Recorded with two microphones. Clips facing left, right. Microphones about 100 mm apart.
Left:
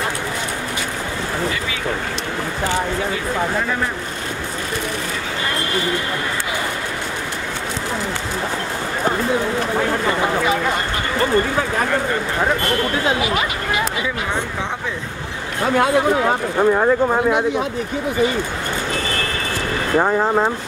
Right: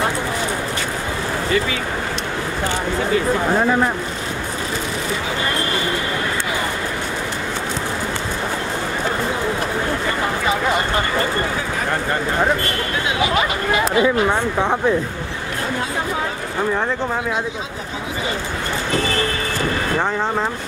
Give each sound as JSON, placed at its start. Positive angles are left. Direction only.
{"t": 15.7, "sound": "speech", "side_deg": 65}
{"t": 16.5, "sound": "speech", "side_deg": 20}